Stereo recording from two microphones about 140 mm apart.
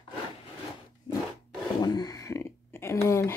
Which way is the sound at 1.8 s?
30° left (ahead or behind).